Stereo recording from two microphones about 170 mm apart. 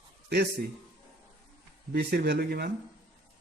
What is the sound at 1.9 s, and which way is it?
Speech, 70° right (ahead or behind).